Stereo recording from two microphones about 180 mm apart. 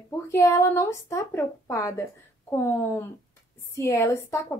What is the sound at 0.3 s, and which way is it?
Speech, 15° left (ahead or behind).